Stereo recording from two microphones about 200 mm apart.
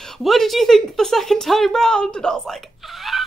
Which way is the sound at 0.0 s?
Centre (ahead or behind).